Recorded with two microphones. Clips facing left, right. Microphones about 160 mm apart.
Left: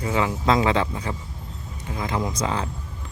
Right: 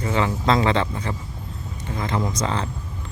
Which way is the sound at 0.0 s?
5° left (ahead or behind).